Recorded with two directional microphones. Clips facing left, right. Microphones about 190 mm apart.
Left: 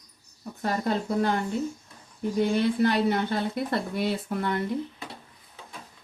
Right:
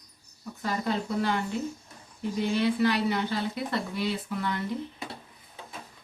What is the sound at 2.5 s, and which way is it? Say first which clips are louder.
Speech: right 1 dB; 50° left (ahead or behind).